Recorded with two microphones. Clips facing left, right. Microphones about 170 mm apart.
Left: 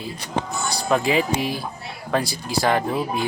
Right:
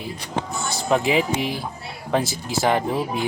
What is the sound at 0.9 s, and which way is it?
Speech, 20° right (ahead or behind).